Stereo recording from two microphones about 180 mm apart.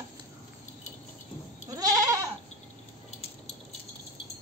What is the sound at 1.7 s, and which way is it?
Goat, 20° right (ahead or behind).